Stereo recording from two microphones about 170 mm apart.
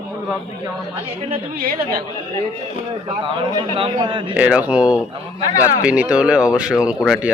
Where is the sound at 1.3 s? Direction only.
60° right (ahead or behind).